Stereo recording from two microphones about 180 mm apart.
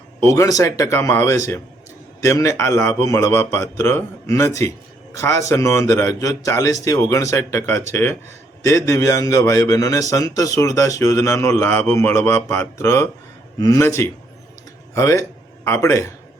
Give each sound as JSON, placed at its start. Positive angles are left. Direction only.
{"t": 0.3, "sound": "a man's voice", "side_deg": 20}